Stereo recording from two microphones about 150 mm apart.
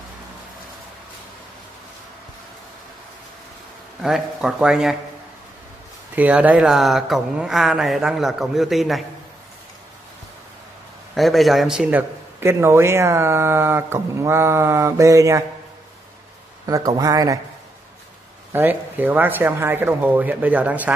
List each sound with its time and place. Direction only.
4.0 s speech: centre (ahead or behind)
6.1 s speech: 10° right (ahead or behind)
11.1 s a man's voice: centre (ahead or behind); by 15.4 s 20° right (ahead or behind)
16.6 s a man's voice: 25° right (ahead or behind)
18.5 s a man's voice: 15° right (ahead or behind)